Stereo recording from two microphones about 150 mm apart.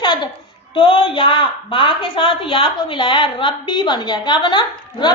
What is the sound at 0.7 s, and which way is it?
A woman's voice, 35° left (ahead or behind).